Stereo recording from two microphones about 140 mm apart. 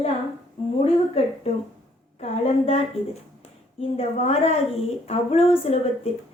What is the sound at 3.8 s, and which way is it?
A woman's voice, 45° left (ahead or behind).